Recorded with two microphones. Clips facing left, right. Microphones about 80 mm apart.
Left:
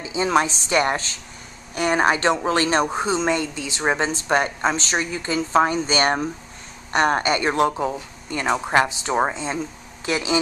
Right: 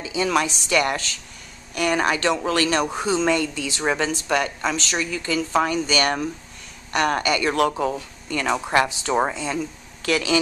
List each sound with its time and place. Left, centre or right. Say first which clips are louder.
0.0 s a woman's voice: left 2 dB; left